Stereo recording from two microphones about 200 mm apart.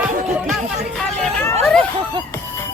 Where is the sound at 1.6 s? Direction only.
5° left (ahead or behind).